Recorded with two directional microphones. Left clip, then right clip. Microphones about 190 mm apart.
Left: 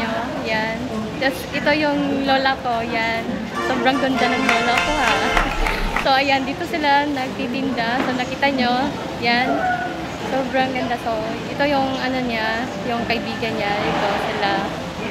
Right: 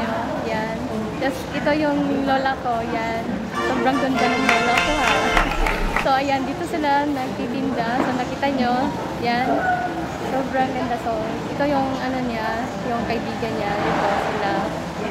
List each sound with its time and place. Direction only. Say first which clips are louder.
1.2 s speech: left 3 dB; 5° left (ahead or behind)
3.6 s speech: left 2 dB; centre (ahead or behind)
8.4 s speech: left 3 dB; 5° left (ahead or behind)